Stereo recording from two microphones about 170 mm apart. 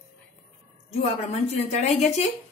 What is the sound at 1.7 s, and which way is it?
Speech, 40° left (ahead or behind).